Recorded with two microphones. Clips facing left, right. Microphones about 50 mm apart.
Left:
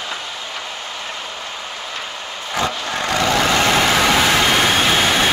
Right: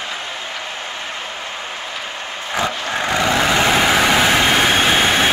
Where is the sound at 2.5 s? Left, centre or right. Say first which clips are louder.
Right 1 dB; centre.